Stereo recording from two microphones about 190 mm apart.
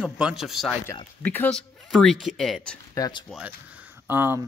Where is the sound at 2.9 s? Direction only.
20° left (ahead or behind).